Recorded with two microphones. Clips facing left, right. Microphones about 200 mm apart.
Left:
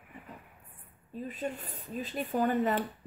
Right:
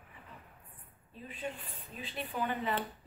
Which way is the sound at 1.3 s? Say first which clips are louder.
Left 2 dB; 45° left (ahead or behind).